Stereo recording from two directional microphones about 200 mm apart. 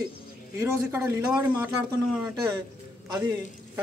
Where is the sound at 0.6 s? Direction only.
15° right (ahead or behind).